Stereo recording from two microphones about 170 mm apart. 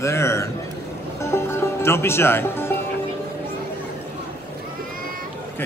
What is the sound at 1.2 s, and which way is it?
Music, 15° left (ahead or behind).